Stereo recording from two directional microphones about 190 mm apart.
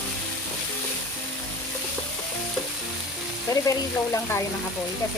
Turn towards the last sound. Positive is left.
turn(degrees=15)  # may be behind; listen again after turning